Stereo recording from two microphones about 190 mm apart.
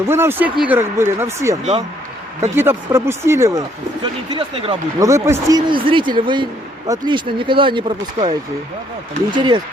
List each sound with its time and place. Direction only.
0.0 s speech: 10° right (ahead or behind)
2.6 s speech: 15° right (ahead or behind)
4.0 s speech: 25° right (ahead or behind)
4.9 s speech: 15° right (ahead or behind)